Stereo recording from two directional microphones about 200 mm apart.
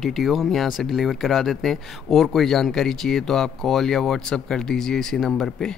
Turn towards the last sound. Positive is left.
turn(degrees=5)  # may be behind; listen again after turning